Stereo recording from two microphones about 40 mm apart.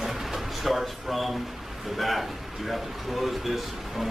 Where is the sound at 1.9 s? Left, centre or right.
Centre.